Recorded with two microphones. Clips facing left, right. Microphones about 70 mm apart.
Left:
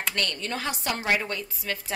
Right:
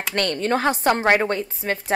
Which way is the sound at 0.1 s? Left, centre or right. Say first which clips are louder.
Right 11 dB; right.